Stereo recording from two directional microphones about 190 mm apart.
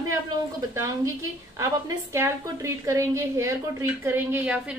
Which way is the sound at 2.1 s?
15° right (ahead or behind).